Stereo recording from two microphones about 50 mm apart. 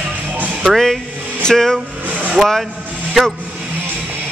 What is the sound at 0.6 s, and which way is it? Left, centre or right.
Speech, centre.